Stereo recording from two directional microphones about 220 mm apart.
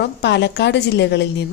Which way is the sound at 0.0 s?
50° left (ahead or behind).